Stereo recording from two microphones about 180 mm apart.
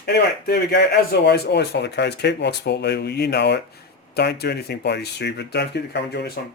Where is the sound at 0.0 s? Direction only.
65° left (ahead or behind).